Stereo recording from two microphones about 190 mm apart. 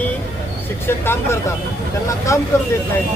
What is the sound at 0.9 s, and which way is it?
Speech, 10° left (ahead or behind).